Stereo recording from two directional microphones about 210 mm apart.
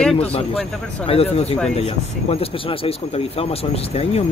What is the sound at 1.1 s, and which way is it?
Speech, 30° left (ahead or behind).